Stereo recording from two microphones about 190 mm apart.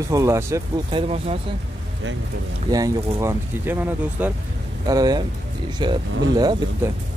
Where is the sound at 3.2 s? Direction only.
10° right (ahead or behind).